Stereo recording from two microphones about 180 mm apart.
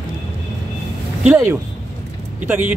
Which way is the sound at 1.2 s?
10° right (ahead or behind).